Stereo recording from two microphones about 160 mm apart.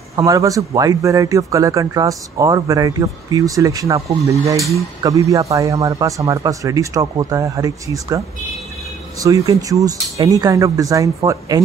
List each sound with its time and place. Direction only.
0.1 s speech: 20° right (ahead or behind)
9.2 s speech: 20° right (ahead or behind)